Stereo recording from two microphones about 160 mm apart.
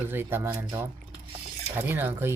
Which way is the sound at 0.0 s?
15° right (ahead or behind).